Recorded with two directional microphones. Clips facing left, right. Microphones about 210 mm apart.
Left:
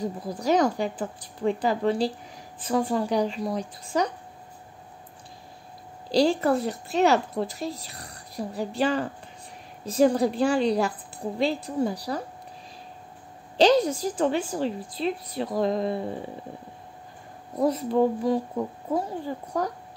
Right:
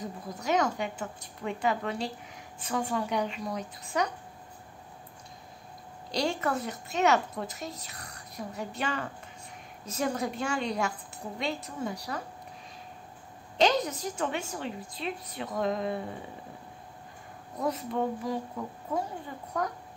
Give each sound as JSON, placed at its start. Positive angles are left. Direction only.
{"t": 0.0, "sound": "a woman's voice", "side_deg": 30}
{"t": 6.1, "sound": "a woman's voice", "side_deg": 30}
{"t": 13.6, "sound": "a woman's voice", "side_deg": 30}
{"t": 17.6, "sound": "a woman's voice", "side_deg": 30}